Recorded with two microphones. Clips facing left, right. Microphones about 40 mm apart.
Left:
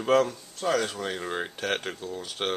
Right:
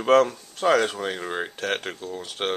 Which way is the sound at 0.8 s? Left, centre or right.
Centre.